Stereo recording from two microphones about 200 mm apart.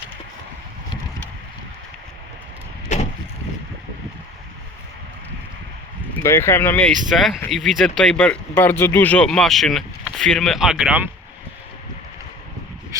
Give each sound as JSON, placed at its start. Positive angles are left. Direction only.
{"t": 2.9, "sound": "vehicle", "side_deg": 35}
{"t": 6.2, "sound": "speech", "side_deg": 10}
{"t": 12.9, "sound": "a sound", "side_deg": -15}